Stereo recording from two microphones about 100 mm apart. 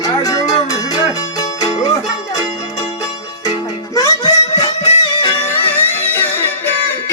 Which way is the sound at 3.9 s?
40° left (ahead or behind).